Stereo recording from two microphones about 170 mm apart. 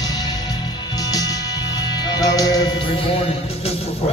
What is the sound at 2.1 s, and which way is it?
Music, 25° left (ahead or behind).